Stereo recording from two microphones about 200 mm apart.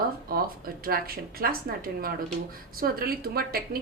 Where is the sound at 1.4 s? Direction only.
45° right (ahead or behind).